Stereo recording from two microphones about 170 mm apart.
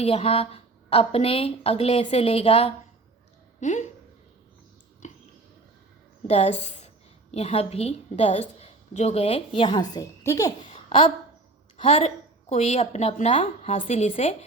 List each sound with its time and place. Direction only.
0.0 s a woman's voice: 35° left (ahead or behind)
5.0 s a sound: 45° left (ahead or behind)
6.2 s a woman's voice: 40° left (ahead or behind); by 10.5 s 20° left (ahead or behind)
10.8 s a woman's voice: 30° left (ahead or behind)